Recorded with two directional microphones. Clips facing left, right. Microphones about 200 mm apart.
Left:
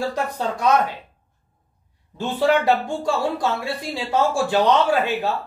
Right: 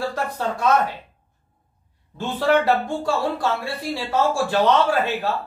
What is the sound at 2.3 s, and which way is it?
Speech, 15° left (ahead or behind).